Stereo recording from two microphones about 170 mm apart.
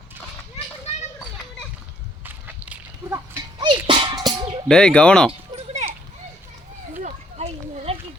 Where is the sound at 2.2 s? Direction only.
10° right (ahead or behind).